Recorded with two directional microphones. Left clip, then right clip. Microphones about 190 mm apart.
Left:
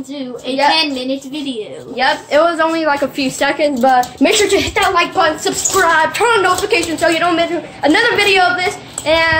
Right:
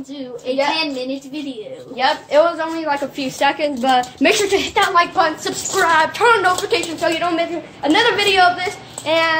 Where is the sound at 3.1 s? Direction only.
Centre (ahead or behind).